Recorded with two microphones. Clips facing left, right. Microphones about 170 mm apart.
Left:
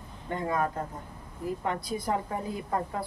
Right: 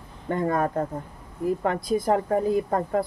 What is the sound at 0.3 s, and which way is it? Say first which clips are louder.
Speech: right 5 dB; 50° right (ahead or behind).